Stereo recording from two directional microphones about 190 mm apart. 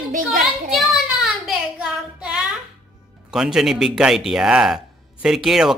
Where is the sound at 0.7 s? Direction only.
Centre (ahead or behind).